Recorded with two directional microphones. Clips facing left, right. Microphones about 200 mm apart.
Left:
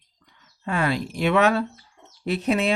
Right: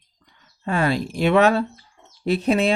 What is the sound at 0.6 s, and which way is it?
Speech, 35° right (ahead or behind).